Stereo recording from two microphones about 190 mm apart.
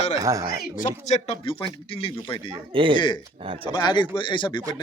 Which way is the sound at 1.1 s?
30° left (ahead or behind).